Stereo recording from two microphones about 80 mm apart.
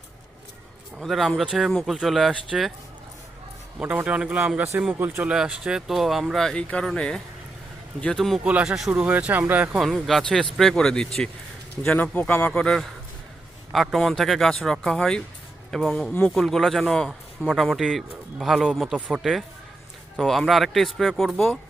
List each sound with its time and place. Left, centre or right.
1.0 s a man's voice: centre
3.8 s speech: centre
5.2 s a man's voice: centre
8.4 s speech: centre
9.8 s a man's voice: centre